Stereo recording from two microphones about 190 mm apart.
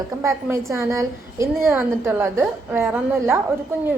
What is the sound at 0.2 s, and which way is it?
A woman's voice, 15° right (ahead or behind).